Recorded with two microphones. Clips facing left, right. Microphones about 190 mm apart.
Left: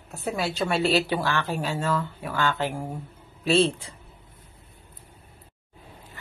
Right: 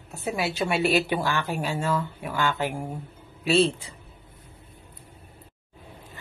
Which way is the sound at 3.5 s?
40° left (ahead or behind).